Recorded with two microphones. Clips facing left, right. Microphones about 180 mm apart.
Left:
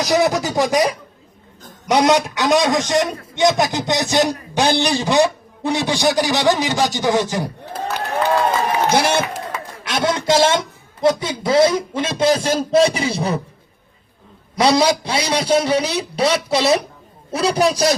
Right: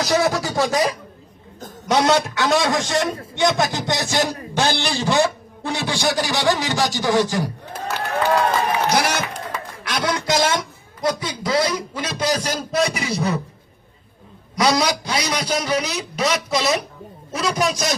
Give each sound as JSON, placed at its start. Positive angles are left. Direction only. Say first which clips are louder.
{"t": 0.0, "sound": "a man's voice", "louder": "left 3 dB", "side_deg": 15}
{"t": 8.9, "sound": "speech", "louder": "left 4 dB", "side_deg": 25}
{"t": 14.5, "sound": "a man's voice", "louder": "left 4 dB", "side_deg": 30}